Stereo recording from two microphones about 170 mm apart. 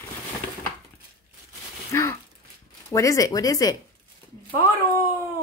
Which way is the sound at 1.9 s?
15° left (ahead or behind).